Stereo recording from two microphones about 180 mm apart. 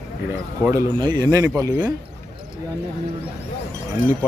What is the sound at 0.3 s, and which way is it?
Speech, 15° right (ahead or behind).